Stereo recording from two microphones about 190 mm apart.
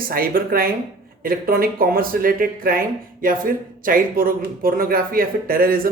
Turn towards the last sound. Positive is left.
turn(degrees=-50)  # may be behind; listen again after turning